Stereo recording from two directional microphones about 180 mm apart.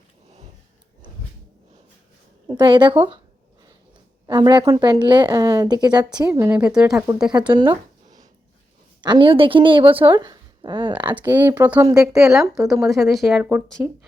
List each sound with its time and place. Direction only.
2.6 s a woman's voice: 25° right (ahead or behind)
4.3 s a woman's voice: 25° right (ahead or behind); by 7.0 s 5° right (ahead or behind)
7.3 s a sound: 25° right (ahead or behind)
9.0 s a woman's voice: 25° right (ahead or behind)
11.2 s a woman's voice: 10° right (ahead or behind)
13.8 s a woman's voice: 10° right (ahead or behind)